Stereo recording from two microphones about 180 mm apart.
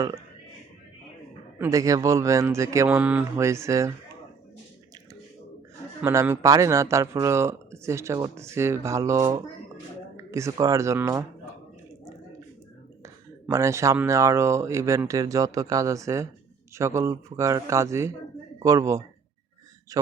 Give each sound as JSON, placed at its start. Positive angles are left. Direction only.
{"t": 1.5, "sound": "speech", "side_deg": -15}
{"t": 6.0, "sound": "speech", "side_deg": -15}
{"t": 13.5, "sound": "a man's voice", "side_deg": -15}